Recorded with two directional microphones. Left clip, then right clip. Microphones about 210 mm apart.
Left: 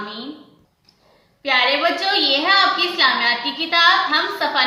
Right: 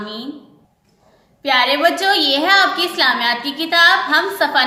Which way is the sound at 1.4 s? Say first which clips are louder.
Right 3 dB; 50° right (ahead or behind).